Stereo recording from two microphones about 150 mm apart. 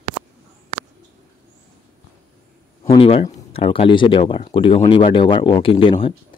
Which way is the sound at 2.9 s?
40° left (ahead or behind).